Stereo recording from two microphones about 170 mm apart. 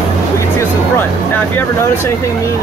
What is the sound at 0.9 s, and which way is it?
Speech, 10° left (ahead or behind).